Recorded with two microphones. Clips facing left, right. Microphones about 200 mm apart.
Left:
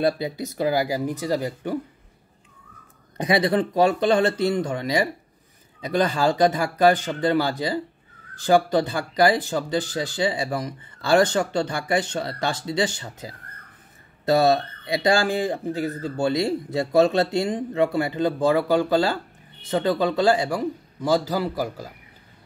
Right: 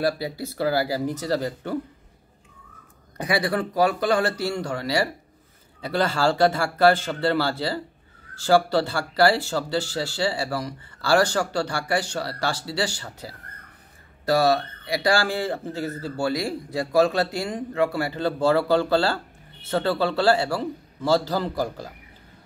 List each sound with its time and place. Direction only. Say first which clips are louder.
0.0 s a man's voice: left 2 dB; 20° left (ahead or behind)
3.2 s a man's voice: left 4 dB; 20° left (ahead or behind)